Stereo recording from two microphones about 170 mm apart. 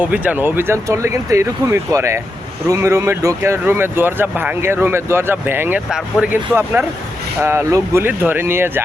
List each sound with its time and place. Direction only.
0.0 s speech: 10° right (ahead or behind)